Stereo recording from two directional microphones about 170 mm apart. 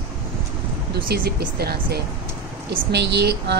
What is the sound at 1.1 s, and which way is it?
Speech, 65° right (ahead or behind).